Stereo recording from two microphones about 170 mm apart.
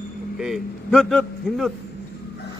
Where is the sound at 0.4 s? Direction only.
Centre (ahead or behind).